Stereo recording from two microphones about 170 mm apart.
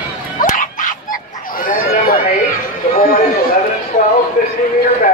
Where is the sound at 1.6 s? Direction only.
55° left (ahead or behind).